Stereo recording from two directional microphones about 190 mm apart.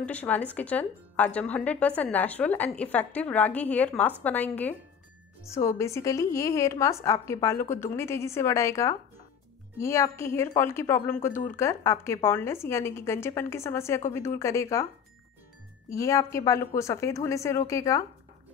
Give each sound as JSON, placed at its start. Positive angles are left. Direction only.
{"t": 0.0, "sound": "speech", "side_deg": 10}
{"t": 15.9, "sound": "speech", "side_deg": 15}